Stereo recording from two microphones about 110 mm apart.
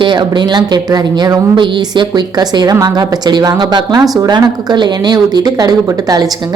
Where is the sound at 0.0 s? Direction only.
45° right (ahead or behind).